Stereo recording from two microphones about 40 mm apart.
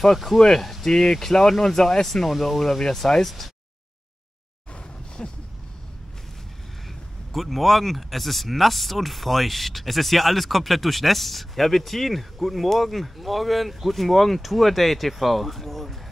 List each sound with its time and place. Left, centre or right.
0.0 s speech: centre
5.2 s a sound: centre
7.3 s speech: centre